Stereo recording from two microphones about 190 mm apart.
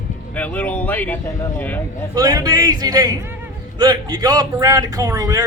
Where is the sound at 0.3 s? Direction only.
10° left (ahead or behind).